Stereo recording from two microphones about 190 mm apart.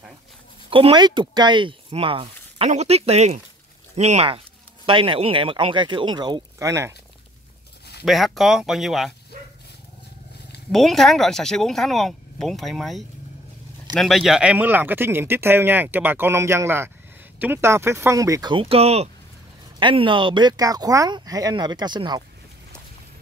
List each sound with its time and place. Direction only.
0.7 s speech: 30° right (ahead or behind)
8.0 s speech: centre (ahead or behind)
10.7 s speech: centre (ahead or behind); by 22.2 s 25° right (ahead or behind)